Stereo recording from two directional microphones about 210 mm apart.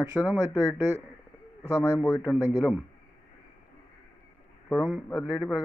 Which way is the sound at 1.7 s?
10° left (ahead or behind).